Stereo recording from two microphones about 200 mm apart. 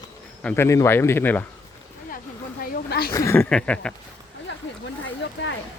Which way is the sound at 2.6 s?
50° left (ahead or behind).